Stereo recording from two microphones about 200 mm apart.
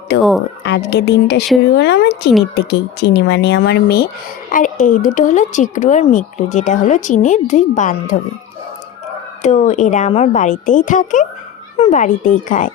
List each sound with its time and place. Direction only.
0.6 s speech: 60° left (ahead or behind); by 8.1 s 40° left (ahead or behind)
9.4 s speech: 35° left (ahead or behind)